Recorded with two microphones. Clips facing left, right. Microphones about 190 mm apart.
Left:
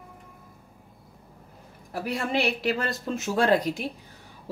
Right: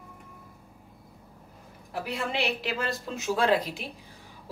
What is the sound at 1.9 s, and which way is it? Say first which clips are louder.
Speech: left 3 dB; 45° left (ahead or behind).